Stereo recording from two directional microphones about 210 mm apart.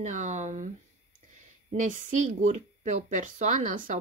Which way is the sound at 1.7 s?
35° right (ahead or behind).